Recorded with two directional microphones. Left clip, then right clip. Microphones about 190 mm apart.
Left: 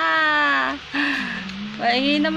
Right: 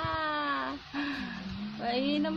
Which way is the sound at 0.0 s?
5° left (ahead or behind).